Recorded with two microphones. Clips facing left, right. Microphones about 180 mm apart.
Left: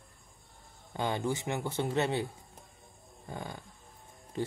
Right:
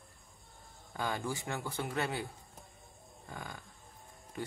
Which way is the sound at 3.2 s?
25° left (ahead or behind).